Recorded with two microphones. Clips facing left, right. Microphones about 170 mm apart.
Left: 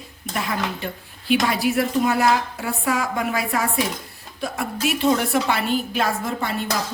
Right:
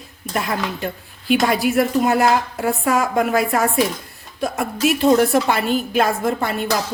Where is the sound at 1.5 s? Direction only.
50° right (ahead or behind).